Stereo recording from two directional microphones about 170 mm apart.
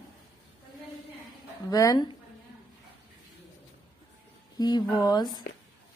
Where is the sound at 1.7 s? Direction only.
20° left (ahead or behind).